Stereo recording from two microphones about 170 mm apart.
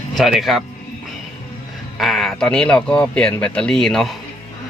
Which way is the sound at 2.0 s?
Centre (ahead or behind).